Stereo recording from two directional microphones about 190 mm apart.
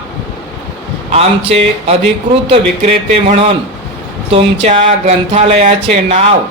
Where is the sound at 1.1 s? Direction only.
30° right (ahead or behind).